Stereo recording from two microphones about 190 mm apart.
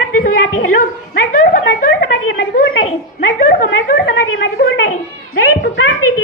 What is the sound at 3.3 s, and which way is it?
A woman's voice, 50° left (ahead or behind).